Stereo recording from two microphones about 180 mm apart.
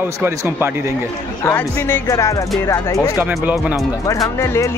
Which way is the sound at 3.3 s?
10° right (ahead or behind).